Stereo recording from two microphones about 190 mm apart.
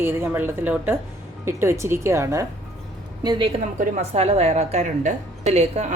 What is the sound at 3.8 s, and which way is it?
A woman's voice, 35° right (ahead or behind).